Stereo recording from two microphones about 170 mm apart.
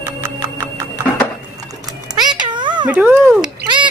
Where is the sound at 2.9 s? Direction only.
10° right (ahead or behind).